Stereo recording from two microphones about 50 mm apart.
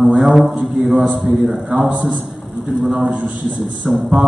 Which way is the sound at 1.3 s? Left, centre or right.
Centre.